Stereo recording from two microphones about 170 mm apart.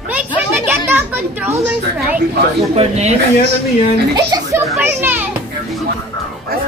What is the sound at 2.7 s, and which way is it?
Speech, 40° right (ahead or behind).